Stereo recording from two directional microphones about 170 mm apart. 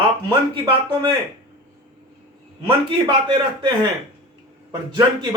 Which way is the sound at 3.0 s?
30° right (ahead or behind).